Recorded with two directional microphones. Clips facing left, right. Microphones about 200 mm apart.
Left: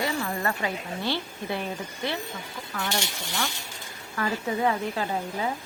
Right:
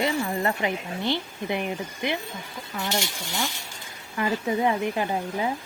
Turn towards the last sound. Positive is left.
turn(degrees=-15)  # may be behind; listen again after turning